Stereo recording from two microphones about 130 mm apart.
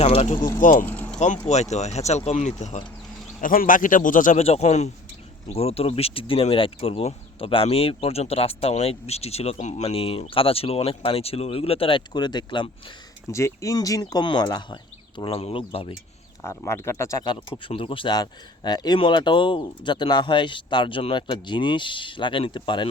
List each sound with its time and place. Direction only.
0.0 s speech: 55° left (ahead or behind)
0.6 s speech: 85° left
0.9 s keys jangling: 15° left (ahead or behind)
1.2 s speech: 60° left (ahead or behind)
3.4 s a man's voice: 90° left
4.4 s speech: 55° left (ahead or behind); by 12.7 s 35° left (ahead or behind)
13.3 s speech: 25° left (ahead or behind)
15.2 s speech: 45° left (ahead or behind)
16.4 s speech: 20° left (ahead or behind)
17.7 s a man's voice: 45° left (ahead or behind)